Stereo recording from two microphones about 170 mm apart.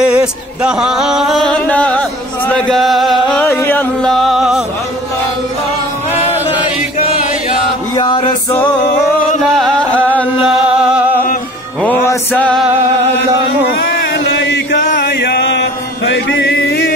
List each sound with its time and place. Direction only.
0.0 s a sound: 5° right (ahead or behind)
3.4 s a sound: 15° left (ahead or behind); by 4.6 s 5° right (ahead or behind)
7.9 s music: 30° left (ahead or behind)
9.6 s music: 5° left (ahead or behind)
10.4 s music: 5° right (ahead or behind)
11.8 s music: 10° left (ahead or behind)
13.7 s chant: 70° left (ahead or behind)
14.9 s chant: 60° left (ahead or behind); by 16.9 s 75° left (ahead or behind)